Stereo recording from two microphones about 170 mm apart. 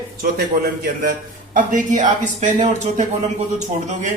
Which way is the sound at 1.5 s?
50° right (ahead or behind).